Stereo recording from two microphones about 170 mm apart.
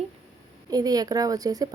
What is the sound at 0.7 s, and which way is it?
Speech, 20° right (ahead or behind).